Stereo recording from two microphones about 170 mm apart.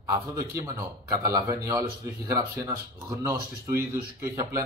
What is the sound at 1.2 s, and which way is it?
Speech, 20° right (ahead or behind).